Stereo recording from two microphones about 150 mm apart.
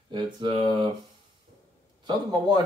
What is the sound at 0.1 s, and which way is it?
Speech, 35° right (ahead or behind).